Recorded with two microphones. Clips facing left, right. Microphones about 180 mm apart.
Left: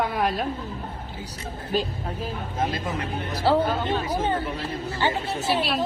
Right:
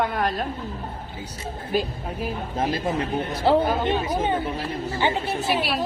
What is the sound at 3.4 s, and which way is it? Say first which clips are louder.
Speech: right 1 dB; 20° right (ahead or behind).